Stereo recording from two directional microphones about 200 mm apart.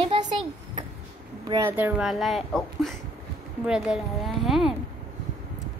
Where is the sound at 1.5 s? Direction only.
15° right (ahead or behind).